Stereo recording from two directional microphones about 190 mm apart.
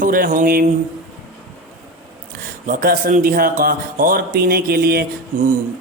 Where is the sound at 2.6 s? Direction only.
45° right (ahead or behind).